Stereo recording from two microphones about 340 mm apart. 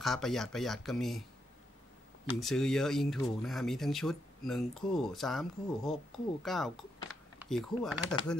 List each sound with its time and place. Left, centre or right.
0.0 s speech: centre
2.4 s speech: centre